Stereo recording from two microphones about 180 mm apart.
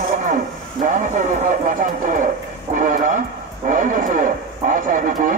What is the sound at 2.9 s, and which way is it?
A man's voice, 45° right (ahead or behind).